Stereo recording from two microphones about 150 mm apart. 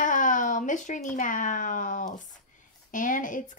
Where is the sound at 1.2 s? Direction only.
60° left (ahead or behind).